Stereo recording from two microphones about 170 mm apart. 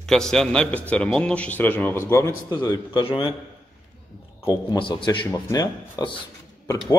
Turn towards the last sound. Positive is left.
turn(degrees=25)  # may be behind; listen again after turning